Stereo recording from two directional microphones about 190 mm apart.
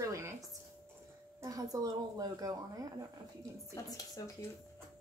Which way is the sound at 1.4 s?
20° right (ahead or behind).